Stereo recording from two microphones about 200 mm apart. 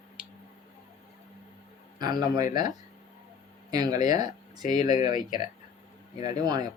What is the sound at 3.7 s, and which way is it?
Speech, 20° right (ahead or behind).